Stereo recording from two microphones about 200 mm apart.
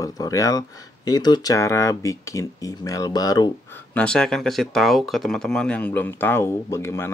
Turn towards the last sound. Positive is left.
turn(degrees=15)  # may be behind; listen again after turning